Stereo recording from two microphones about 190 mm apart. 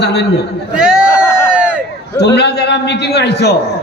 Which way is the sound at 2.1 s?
60° left (ahead or behind).